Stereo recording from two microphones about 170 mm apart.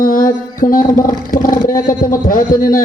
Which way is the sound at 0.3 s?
50° left (ahead or behind).